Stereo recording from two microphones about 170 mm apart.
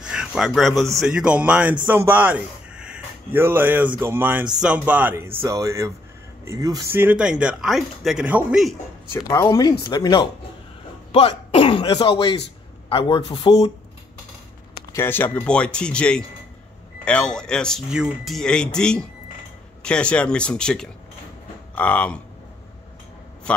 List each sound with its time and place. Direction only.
0.1 s a sound: 5° right (ahead or behind)
0.6 s speech: centre (ahead or behind)
9.1 s speech: 15° left (ahead or behind)
11.1 s speech: 35° left (ahead or behind)
15.0 s speech: 10° left (ahead or behind)